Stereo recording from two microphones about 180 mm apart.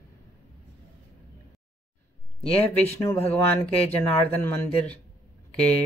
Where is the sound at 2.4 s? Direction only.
35° left (ahead or behind).